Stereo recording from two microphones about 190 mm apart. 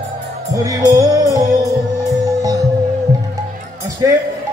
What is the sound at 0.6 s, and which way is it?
Music, 20° right (ahead or behind).